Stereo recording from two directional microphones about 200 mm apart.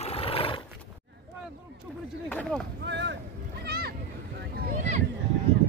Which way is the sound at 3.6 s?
50° right (ahead or behind).